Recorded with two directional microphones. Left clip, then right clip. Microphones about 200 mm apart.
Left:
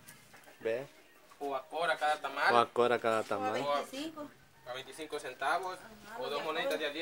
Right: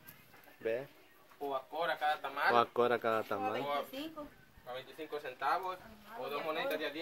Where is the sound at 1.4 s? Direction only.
20° left (ahead or behind).